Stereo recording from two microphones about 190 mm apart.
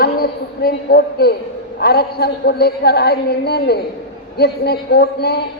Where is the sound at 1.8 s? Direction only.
55° left (ahead or behind).